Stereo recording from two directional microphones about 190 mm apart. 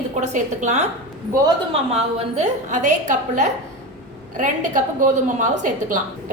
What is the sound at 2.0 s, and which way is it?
A woman's voice, 35° right (ahead or behind).